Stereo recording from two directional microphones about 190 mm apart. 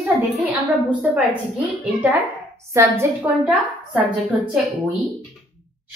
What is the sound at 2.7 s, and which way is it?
Speech, 15° right (ahead or behind).